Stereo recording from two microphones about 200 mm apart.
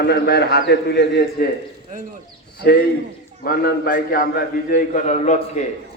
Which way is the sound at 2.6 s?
50° left (ahead or behind).